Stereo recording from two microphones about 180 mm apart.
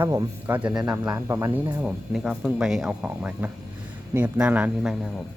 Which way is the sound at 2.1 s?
Centre (ahead or behind).